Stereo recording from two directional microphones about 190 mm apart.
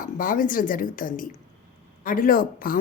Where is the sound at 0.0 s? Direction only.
45° left (ahead or behind).